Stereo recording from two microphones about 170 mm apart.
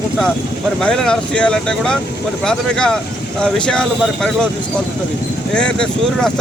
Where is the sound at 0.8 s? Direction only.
5° left (ahead or behind).